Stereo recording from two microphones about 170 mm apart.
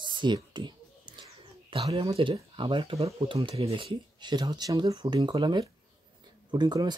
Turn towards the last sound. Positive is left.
turn(degrees=-25)  # may be behind; listen again after turning